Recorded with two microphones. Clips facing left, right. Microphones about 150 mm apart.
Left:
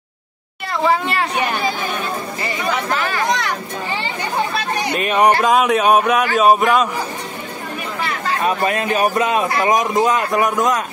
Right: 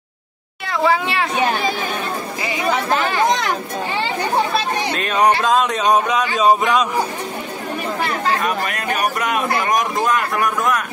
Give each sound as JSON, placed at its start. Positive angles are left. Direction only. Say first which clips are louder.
{"t": 0.7, "sound": "speech", "louder": "even", "side_deg": 0}
{"t": 2.9, "sound": "speech", "louder": "right 4 dB", "side_deg": -25}
{"t": 4.9, "sound": "speech", "louder": "left 2 dB", "side_deg": 10}
{"t": 8.6, "sound": "speech", "louder": "left 4 dB", "side_deg": 30}